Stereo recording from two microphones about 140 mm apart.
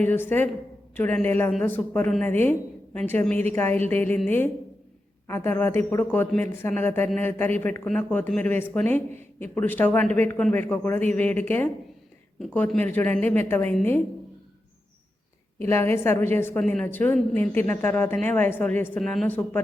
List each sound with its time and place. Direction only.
0.0 s a man's voice: 15° left (ahead or behind)
5.3 s a man's voice: 15° left (ahead or behind)
15.5 s a man's voice: 15° left (ahead or behind)